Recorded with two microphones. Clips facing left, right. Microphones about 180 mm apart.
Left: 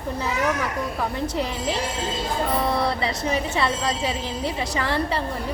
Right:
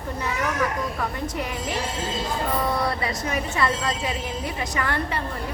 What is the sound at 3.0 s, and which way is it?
A woman's voice, 30° left (ahead or behind).